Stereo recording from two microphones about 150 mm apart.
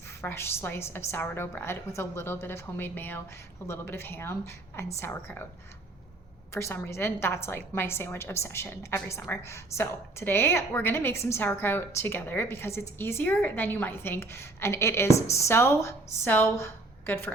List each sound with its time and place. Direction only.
0.2 s a woman's voice: 15° left (ahead or behind)
6.5 s a woman's voice: 20° left (ahead or behind)